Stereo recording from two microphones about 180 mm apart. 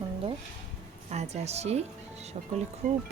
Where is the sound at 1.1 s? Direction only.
35° right (ahead or behind).